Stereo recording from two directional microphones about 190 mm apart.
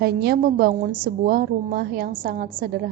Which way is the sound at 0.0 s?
55° right (ahead or behind).